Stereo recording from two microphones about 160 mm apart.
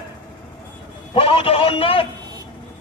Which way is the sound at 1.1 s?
35° left (ahead or behind).